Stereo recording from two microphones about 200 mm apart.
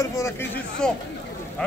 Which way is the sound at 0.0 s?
15° left (ahead or behind).